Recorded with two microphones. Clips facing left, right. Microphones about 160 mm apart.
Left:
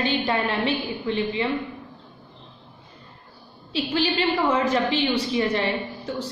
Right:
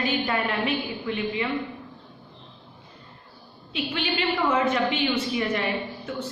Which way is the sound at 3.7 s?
35° left (ahead or behind).